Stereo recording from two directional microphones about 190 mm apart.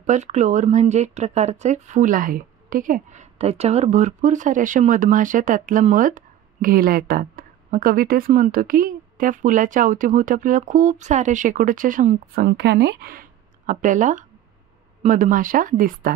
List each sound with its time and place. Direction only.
0.0 s speech: 40° right (ahead or behind)